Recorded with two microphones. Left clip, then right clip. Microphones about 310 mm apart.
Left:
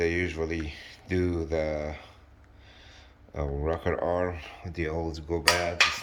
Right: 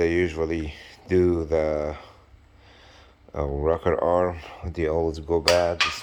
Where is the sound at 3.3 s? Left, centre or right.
Centre.